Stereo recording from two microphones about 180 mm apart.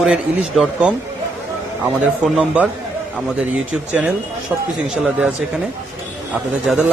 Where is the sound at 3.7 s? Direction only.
5° right (ahead or behind).